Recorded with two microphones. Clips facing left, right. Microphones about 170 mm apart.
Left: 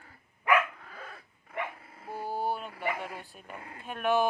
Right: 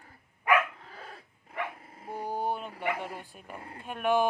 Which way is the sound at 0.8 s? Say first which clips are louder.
Even; 30° right (ahead or behind).